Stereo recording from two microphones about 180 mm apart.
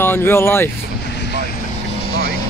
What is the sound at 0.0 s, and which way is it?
Speech, 10° left (ahead or behind).